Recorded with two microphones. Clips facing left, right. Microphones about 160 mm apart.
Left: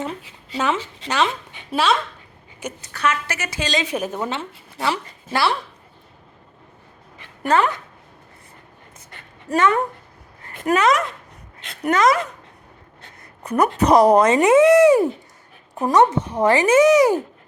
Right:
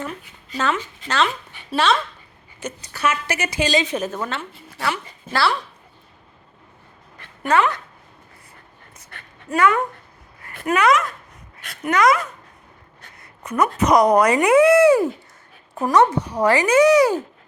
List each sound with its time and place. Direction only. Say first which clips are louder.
0.0 s speech: left 2 dB; 25° left (ahead or behind)
1.0 s a woman's voice: even; 15° left (ahead or behind)
2.9 s a woman's voice: even; 10° right (ahead or behind)
3.8 s a woman's voice: left 1 dB; 10° left (ahead or behind)
7.4 s speech: even; 30° left (ahead or behind)
9.5 s speech: even; 30° left (ahead or behind)
10.4 s a sound: left 2 dB; 20° left (ahead or behind)
10.7 s speech: even; 30° left (ahead or behind)